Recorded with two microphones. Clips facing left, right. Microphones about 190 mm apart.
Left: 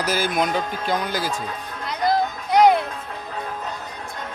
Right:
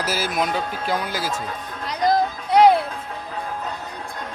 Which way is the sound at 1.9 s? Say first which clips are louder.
Right 1 dB; 40° right (ahead or behind).